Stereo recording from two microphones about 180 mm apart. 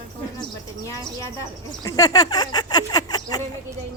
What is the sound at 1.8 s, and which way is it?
Speech, 20° left (ahead or behind).